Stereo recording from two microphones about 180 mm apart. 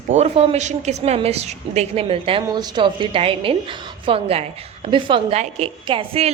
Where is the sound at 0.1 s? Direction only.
35° right (ahead or behind).